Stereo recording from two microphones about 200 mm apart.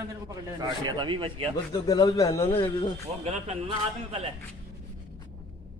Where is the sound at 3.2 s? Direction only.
30° right (ahead or behind).